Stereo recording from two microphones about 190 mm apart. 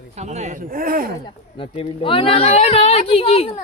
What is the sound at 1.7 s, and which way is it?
Speech, 30° left (ahead or behind).